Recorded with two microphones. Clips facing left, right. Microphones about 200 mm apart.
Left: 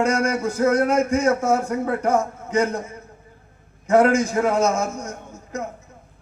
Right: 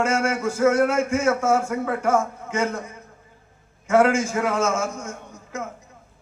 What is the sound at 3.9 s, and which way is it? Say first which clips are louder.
A man's voice: left 2 dB; 35° left (ahead or behind).